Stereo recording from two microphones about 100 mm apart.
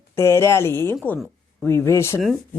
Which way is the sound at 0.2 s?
25° left (ahead or behind).